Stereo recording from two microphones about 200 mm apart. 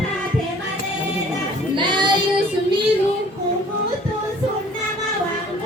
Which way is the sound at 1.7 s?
25° right (ahead or behind).